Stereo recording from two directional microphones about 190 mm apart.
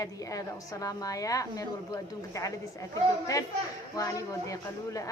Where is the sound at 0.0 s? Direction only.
15° left (ahead or behind).